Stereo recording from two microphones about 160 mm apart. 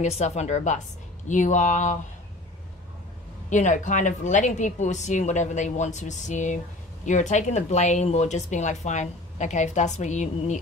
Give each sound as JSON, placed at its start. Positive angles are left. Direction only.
{"t": 0.0, "sound": "speech", "side_deg": 45}
{"t": 3.4, "sound": "speech", "side_deg": 50}